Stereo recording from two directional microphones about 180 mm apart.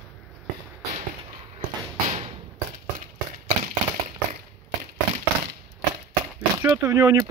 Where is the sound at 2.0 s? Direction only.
35° right (ahead or behind).